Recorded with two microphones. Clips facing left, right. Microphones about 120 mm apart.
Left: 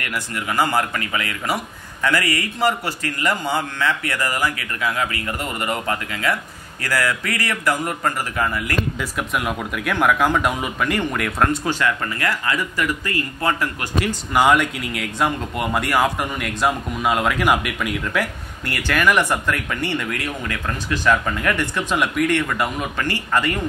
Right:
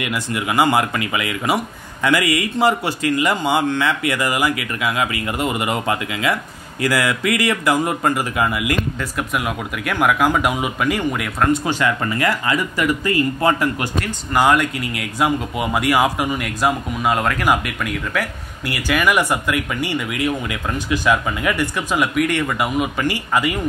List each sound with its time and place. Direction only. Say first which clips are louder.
0.0 s speech: right 4 dB; 15° right (ahead or behind)
9.3 s speech: right 1 dB; centre (ahead or behind)
13.9 s speech: even; centre (ahead or behind)